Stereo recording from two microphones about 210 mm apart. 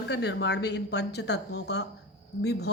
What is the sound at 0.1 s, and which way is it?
Speech, 55° left (ahead or behind).